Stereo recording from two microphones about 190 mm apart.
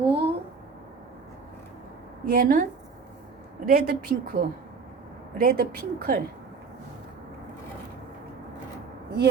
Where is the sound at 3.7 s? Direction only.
50° right (ahead or behind).